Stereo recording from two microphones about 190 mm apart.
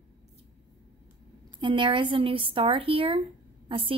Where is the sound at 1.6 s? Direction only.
25° right (ahead or behind).